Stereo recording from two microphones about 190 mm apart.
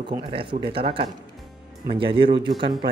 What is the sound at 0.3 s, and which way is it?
Speech, 25° right (ahead or behind).